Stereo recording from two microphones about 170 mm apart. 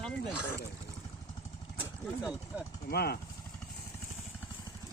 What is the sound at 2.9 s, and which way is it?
Speech, 65° left (ahead or behind).